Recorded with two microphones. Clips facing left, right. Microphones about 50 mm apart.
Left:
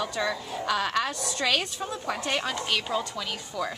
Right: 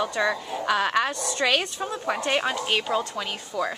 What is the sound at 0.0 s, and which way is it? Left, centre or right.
A woman's voice, centre.